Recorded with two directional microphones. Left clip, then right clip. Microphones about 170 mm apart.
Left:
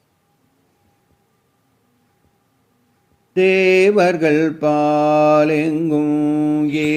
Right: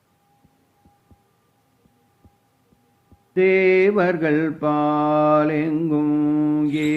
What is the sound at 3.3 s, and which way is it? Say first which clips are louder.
Mantra: left 3 dB; 25° left (ahead or behind).